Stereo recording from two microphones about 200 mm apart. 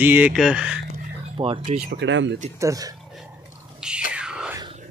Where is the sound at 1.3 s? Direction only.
25° right (ahead or behind).